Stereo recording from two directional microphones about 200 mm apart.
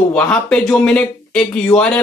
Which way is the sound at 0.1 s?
5° left (ahead or behind).